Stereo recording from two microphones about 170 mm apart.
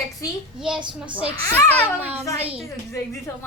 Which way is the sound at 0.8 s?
30° right (ahead or behind).